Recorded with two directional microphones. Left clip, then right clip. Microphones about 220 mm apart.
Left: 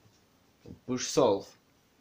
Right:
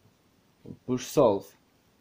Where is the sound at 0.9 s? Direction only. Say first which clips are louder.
Right 3 dB; 40° right (ahead or behind).